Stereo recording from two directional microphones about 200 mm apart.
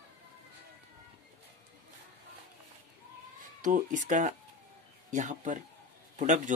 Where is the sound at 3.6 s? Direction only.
40° right (ahead or behind).